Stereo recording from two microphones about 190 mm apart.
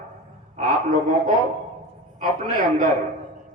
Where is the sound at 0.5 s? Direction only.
45° right (ahead or behind).